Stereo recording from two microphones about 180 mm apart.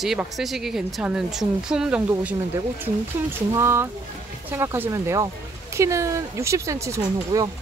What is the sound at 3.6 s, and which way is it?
Speech, 15° right (ahead or behind).